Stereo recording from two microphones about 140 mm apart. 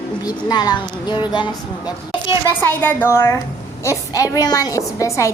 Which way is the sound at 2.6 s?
15° left (ahead or behind).